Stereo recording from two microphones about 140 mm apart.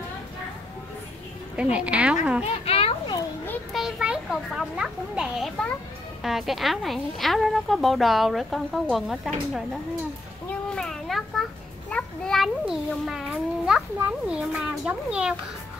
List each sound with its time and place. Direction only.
1.6 s a woman's voice: 10° right (ahead or behind)
2.4 s speech: 45° left (ahead or behind)
3.7 s a child's voice: 5° right (ahead or behind)
10.7 s a sound: 5° left (ahead or behind)
11.9 s a child's voice: centre (ahead or behind)